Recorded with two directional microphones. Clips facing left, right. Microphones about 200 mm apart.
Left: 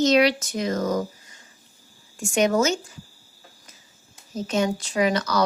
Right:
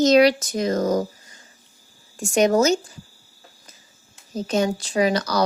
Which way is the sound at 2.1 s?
35° right (ahead or behind).